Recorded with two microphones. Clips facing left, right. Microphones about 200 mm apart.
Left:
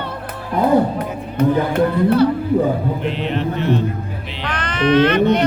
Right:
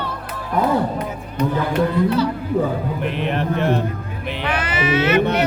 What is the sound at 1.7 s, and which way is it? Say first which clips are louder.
Music: left 2 dB; 55° left (ahead or behind).